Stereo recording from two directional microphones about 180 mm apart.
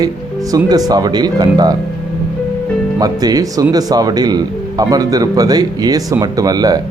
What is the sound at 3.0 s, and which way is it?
Speech, 20° right (ahead or behind).